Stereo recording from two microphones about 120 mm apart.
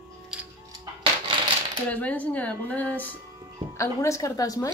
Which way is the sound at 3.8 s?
25° left (ahead or behind).